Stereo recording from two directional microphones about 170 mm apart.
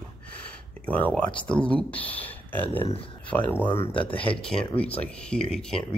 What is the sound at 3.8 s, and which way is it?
Speech, 30° left (ahead or behind).